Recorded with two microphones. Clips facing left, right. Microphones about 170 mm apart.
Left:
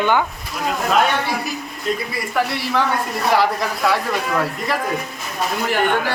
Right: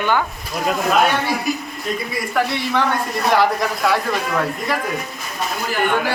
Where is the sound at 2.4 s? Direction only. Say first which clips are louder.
Even; centre (ahead or behind).